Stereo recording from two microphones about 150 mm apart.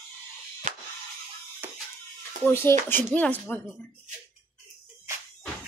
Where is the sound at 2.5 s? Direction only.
15° left (ahead or behind).